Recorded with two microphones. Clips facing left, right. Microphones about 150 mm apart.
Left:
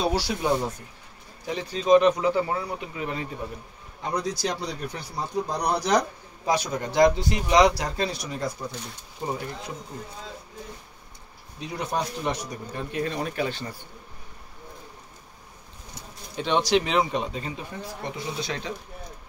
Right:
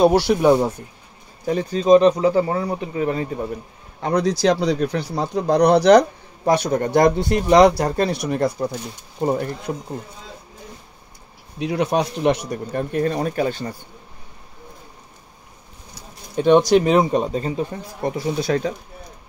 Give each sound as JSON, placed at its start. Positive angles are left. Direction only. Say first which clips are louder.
{"t": 0.0, "sound": "speech", "louder": "right 11 dB", "side_deg": -60}
{"t": 1.4, "sound": "speech", "louder": "right 8 dB", "side_deg": -45}
{"t": 4.0, "sound": "speech", "louder": "right 10 dB", "side_deg": -75}
{"t": 11.6, "sound": "speech", "louder": "right 9 dB", "side_deg": -75}
{"t": 16.3, "sound": "speech", "louder": "right 9 dB", "side_deg": -50}